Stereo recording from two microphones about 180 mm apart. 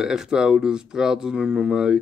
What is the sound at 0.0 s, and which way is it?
Speech, 5° right (ahead or behind).